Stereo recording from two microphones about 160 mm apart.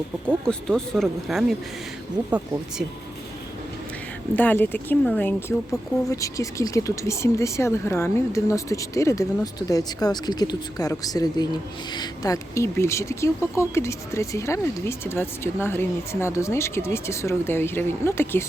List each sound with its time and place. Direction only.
0.4 s speech: 5° left (ahead or behind)
4.4 s speech: 10° left (ahead or behind)